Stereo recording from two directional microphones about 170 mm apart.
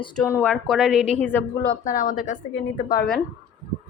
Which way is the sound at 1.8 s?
50° left (ahead or behind).